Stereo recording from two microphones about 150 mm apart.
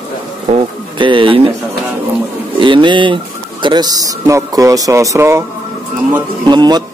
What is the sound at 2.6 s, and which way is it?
Speech, 35° right (ahead or behind).